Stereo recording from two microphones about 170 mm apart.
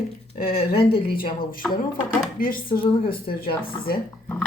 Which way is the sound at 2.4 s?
55° left (ahead or behind).